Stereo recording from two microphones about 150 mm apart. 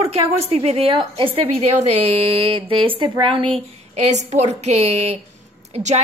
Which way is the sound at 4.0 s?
50° right (ahead or behind).